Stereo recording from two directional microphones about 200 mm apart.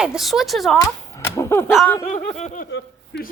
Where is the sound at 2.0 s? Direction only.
35° left (ahead or behind).